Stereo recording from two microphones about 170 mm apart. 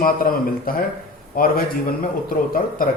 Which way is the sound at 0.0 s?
55° left (ahead or behind).